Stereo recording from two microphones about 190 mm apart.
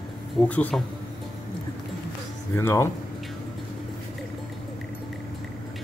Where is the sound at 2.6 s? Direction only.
15° left (ahead or behind).